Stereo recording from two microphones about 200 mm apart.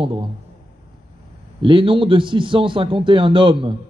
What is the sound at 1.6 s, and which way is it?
A man's voice, 25° right (ahead or behind).